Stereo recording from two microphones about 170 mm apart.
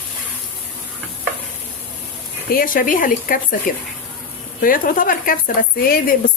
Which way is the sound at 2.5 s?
55° left (ahead or behind).